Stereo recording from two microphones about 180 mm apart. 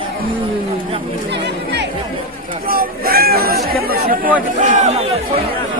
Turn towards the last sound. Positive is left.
turn(degrees=-45)  # may be behind; listen again after turning